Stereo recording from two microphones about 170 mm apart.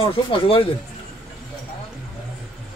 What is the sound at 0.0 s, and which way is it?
Speech, 30° left (ahead or behind).